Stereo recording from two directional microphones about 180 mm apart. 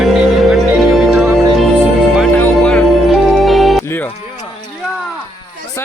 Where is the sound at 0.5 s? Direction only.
Centre (ahead or behind).